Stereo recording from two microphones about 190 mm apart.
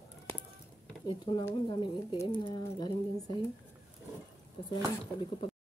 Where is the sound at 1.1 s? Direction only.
25° left (ahead or behind).